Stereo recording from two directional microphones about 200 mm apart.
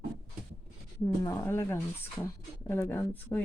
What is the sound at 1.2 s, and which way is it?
Speech, 15° left (ahead or behind).